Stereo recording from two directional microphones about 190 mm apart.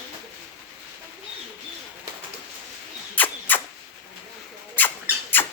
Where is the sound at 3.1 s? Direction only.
10° left (ahead or behind).